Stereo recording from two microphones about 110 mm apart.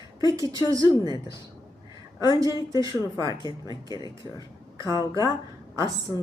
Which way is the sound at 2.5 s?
30° right (ahead or behind).